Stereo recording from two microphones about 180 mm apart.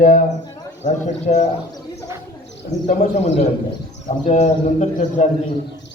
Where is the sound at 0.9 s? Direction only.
40° left (ahead or behind).